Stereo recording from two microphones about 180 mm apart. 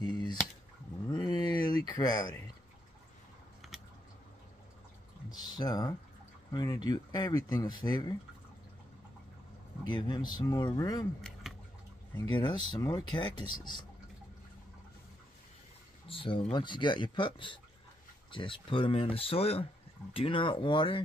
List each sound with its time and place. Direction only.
0.0 s a sound: 25° left (ahead or behind)
1.9 s speech: 20° left (ahead or behind)
3.6 s typing: centre (ahead or behind)
5.3 s speech: 20° left (ahead or behind)
9.8 s speech: 25° left (ahead or behind)
12.2 s speech: 25° left (ahead or behind)
16.1 s speech: 30° left (ahead or behind)